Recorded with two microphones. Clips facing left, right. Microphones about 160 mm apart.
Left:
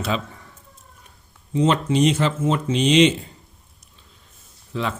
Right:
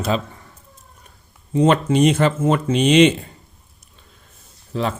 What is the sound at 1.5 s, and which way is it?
Speech, 55° right (ahead or behind).